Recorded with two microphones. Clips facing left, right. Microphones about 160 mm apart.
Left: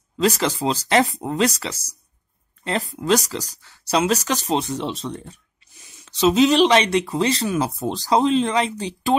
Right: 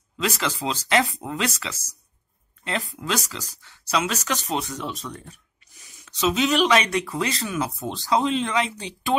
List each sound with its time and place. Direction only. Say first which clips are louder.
0.2 s speech: left 6 dB; 35° left (ahead or behind)